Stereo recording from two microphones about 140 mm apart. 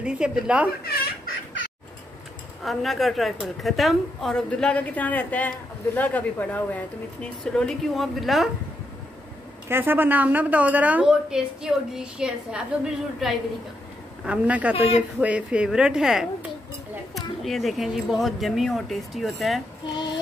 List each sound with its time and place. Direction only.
0.0 s a woman's voice: 5° right (ahead or behind)
0.8 s a sound: 90° left
2.6 s a woman's voice: centre (ahead or behind)
9.7 s a woman's voice: 15° right (ahead or behind)